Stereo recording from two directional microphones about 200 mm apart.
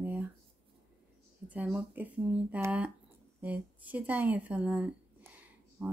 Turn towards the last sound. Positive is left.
turn(degrees=-10)  # may be behind; listen again after turning